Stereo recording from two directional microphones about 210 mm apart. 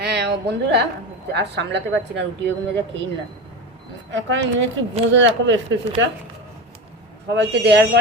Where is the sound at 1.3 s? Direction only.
55° right (ahead or behind).